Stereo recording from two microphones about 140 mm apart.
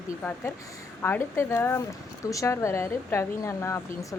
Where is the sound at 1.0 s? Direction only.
15° left (ahead or behind).